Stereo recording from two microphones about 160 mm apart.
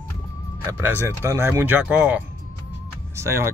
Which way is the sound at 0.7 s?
15° right (ahead or behind).